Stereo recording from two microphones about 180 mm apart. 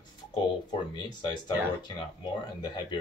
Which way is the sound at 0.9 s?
25° left (ahead or behind).